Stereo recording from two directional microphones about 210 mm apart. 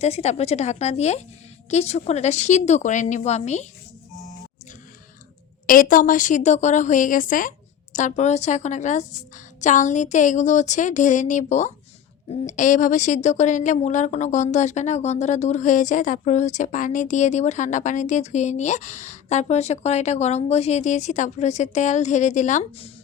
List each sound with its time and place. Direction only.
0.0 s speech: 30° left (ahead or behind)
5.6 s speech: 40° left (ahead or behind)